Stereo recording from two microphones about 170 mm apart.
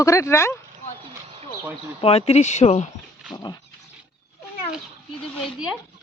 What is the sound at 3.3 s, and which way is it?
Dog, 25° left (ahead or behind).